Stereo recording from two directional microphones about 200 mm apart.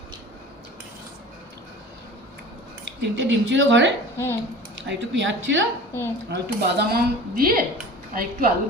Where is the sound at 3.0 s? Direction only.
70° right (ahead or behind).